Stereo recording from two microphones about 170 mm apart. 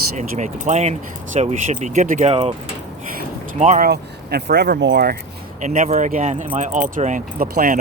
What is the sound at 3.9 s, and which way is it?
Speech, 75° right (ahead or behind).